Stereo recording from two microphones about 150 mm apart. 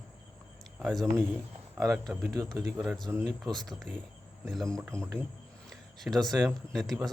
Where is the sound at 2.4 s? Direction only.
25° right (ahead or behind).